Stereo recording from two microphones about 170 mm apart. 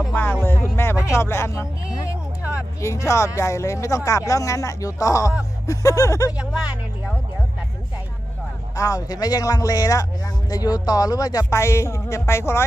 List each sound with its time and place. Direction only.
0.1 s music: 10° left (ahead or behind)
0.7 s speech: 15° left (ahead or behind)
6.3 s speech: 10° right (ahead or behind)
8.7 s speech: 20° left (ahead or behind)